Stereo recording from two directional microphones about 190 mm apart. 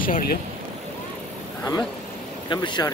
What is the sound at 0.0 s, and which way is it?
Speech, 50° left (ahead or behind).